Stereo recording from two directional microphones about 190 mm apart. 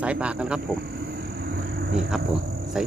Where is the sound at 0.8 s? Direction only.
55° right (ahead or behind).